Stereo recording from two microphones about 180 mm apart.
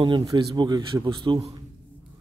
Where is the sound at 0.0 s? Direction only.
25° right (ahead or behind).